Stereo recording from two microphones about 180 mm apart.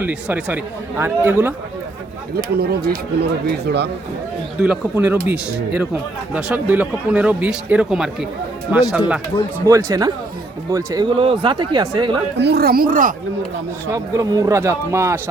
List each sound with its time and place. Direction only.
0.0 s a man's voice: 5° right (ahead or behind)
2.3 s speech: 60° right (ahead or behind)
4.6 s a man's voice: 10° right (ahead or behind)
9.6 s a man's voice: 20° right (ahead or behind)
12.4 s speech: 65° right (ahead or behind); by 13.1 s 50° right (ahead or behind)
13.9 s a man's voice: 20° right (ahead or behind)